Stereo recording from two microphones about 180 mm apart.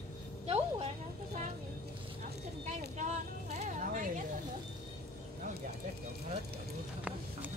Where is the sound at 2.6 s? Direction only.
45° right (ahead or behind).